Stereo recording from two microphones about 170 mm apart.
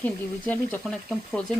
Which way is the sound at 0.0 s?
10° left (ahead or behind).